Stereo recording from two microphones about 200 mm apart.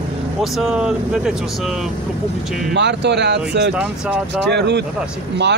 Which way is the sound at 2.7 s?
60° right (ahead or behind).